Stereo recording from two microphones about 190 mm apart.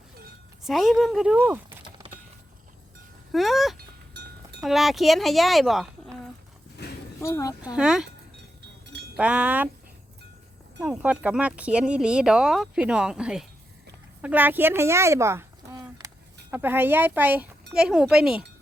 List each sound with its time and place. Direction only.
0.6 s speech: centre (ahead or behind)
3.3 s speech: centre (ahead or behind)
4.1 s a sound: 60° right (ahead or behind)
4.6 s speech: centre (ahead or behind)
6.8 s a sound: 60° left (ahead or behind)
7.2 s speech: 15° left (ahead or behind)
7.8 s speech: 5° right (ahead or behind)
9.1 s speech: 5° right (ahead or behind)
10.8 s speech: 5° right (ahead or behind)